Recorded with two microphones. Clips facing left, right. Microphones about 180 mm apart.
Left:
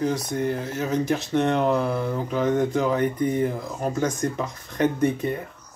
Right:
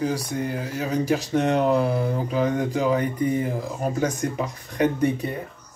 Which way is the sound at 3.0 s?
10° right (ahead or behind).